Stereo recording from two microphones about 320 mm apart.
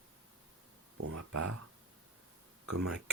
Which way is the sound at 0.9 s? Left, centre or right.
Right.